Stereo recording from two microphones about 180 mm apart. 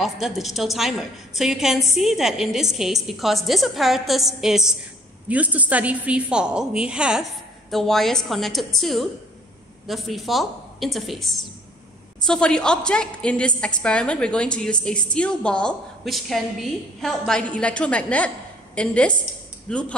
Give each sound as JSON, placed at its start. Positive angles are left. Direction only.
{"t": 0.0, "sound": "a woman's voice", "side_deg": 0}